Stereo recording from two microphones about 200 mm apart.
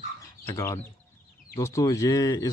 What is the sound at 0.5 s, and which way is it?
Speech, 15° left (ahead or behind).